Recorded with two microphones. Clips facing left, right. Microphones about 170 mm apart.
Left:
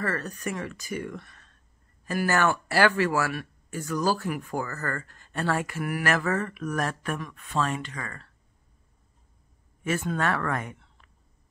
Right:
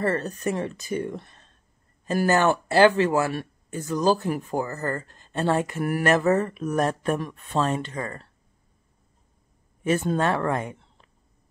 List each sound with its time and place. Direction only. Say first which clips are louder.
0.0 s speech: right 6 dB; 25° right (ahead or behind)
6.0 s speech: right 7 dB; 25° right (ahead or behind)
9.9 s speech: right 3 dB; 30° right (ahead or behind)